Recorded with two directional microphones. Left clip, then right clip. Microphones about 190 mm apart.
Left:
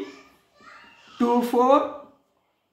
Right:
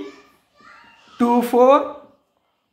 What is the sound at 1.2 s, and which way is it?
Speech, 40° right (ahead or behind).